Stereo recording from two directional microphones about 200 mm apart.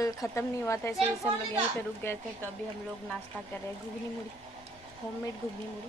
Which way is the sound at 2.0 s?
10° left (ahead or behind).